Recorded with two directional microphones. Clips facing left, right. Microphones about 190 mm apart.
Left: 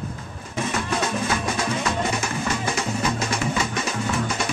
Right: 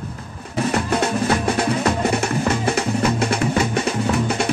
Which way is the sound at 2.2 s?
60° right (ahead or behind).